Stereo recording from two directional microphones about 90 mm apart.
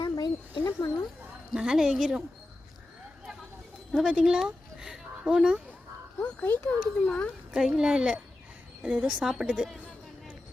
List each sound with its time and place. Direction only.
0.0 s a sound: 55° left (ahead or behind)
0.6 s a sound: 35° left (ahead or behind)
1.5 s a woman's voice: 5° right (ahead or behind)
4.0 s speech: 10° right (ahead or behind)
6.4 s a child's voice: 25° left (ahead or behind)
7.5 s a woman's voice: 5° right (ahead or behind)